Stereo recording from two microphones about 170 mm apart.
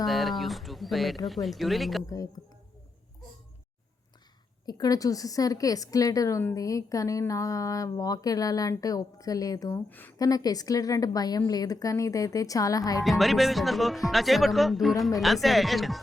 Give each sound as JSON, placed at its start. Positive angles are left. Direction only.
{"t": 0.0, "sound": "speech", "side_deg": 0}
{"t": 4.6, "sound": "a woman's voice", "side_deg": 25}
{"t": 10.2, "sound": "a woman's voice", "side_deg": 20}
{"t": 13.1, "sound": "speech", "side_deg": 0}